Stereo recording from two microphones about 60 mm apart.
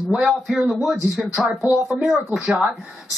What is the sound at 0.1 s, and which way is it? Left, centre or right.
Speech, centre.